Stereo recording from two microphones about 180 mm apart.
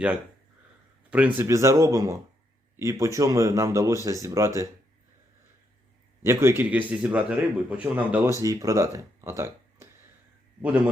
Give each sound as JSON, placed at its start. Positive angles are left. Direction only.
{"t": 1.1, "sound": "a man's voice", "side_deg": -10}
{"t": 6.2, "sound": "a man's voice", "side_deg": -15}